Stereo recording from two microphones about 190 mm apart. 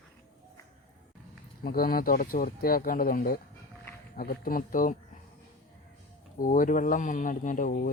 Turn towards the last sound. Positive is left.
turn(degrees=45)  # may be behind; listen again after turning